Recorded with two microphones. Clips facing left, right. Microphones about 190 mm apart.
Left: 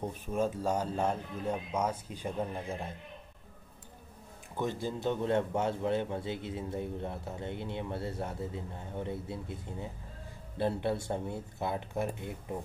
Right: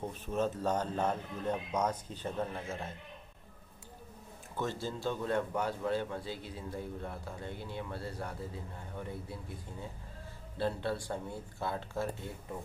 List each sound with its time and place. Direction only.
0.0 s speech: 10° left (ahead or behind)
4.6 s a man's voice: 15° left (ahead or behind)